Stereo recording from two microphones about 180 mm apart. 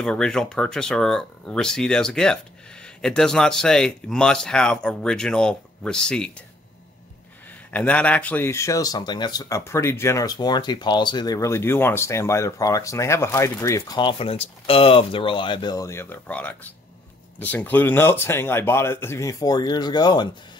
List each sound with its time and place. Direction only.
0.0 s speech: 5° left (ahead or behind)
7.7 s speech: 10° left (ahead or behind); by 20.2 s 25° left (ahead or behind)